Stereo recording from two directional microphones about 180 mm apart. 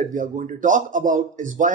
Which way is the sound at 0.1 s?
45° right (ahead or behind).